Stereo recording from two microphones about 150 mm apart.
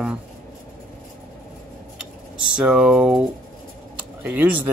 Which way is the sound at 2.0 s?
5° right (ahead or behind).